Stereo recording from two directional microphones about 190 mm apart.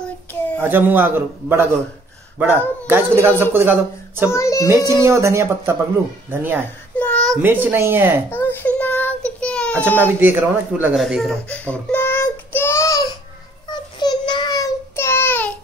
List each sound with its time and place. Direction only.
0.6 s a man's voice: 10° right (ahead or behind)
2.9 s a man's voice: 10° right (ahead or behind)
4.3 s child singing: 15° left (ahead or behind)
4.6 s a man's voice: 15° right (ahead or behind)
7.0 s a sound: 5° left (ahead or behind)
7.4 s a man's voice: 10° right (ahead or behind)
8.3 s child singing: 10° left (ahead or behind)
9.8 s speech: 10° right (ahead or behind); by 13.1 s 15° left (ahead or behind)
13.7 s child singing: 25° left (ahead or behind)